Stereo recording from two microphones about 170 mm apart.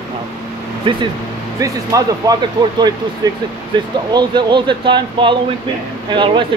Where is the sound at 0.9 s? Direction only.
30° right (ahead or behind).